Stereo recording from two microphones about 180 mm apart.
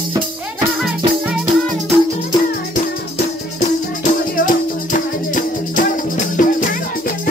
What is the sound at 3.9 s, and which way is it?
Music, 45° left (ahead or behind).